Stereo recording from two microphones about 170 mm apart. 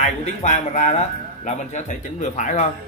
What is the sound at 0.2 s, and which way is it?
A man's voice, 45° left (ahead or behind).